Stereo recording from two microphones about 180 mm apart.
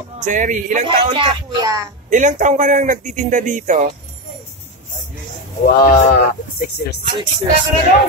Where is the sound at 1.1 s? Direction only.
25° right (ahead or behind).